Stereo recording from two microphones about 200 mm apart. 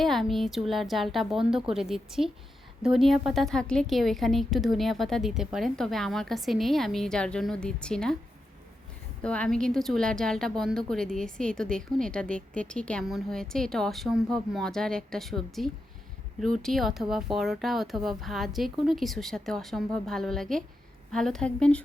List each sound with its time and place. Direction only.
0.0 s a woman's voice: centre (ahead or behind)
9.2 s a woman's voice: 5° left (ahead or behind)